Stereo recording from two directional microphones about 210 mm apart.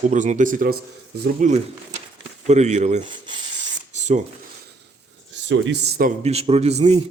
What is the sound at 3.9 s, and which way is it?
Rub, 35° right (ahead or behind).